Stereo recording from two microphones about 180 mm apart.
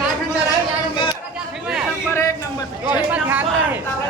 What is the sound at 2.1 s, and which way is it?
Speech, 15° left (ahead or behind).